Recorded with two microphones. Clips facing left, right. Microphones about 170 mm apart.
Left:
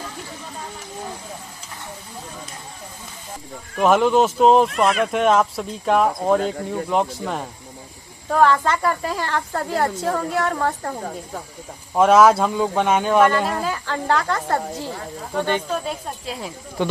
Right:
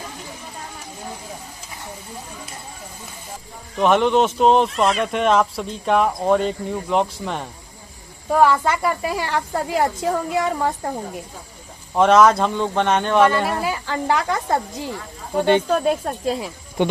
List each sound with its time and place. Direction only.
3.8 s speech: 5° left (ahead or behind)
8.3 s speech: 10° right (ahead or behind)
11.9 s speech: 5° left (ahead or behind)
13.3 s speech: 10° right (ahead or behind)
15.8 s speech: 50° right (ahead or behind)